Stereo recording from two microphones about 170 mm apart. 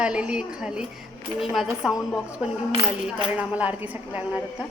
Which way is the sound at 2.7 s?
20° right (ahead or behind).